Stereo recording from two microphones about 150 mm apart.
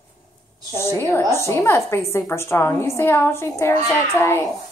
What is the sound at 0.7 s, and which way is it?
A woman's voice, 20° left (ahead or behind).